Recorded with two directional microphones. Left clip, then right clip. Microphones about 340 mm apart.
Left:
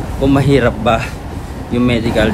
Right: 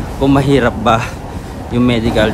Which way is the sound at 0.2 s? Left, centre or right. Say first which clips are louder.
Right 1 dB; centre.